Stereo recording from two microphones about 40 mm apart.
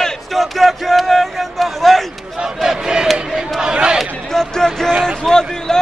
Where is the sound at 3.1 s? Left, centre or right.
Centre.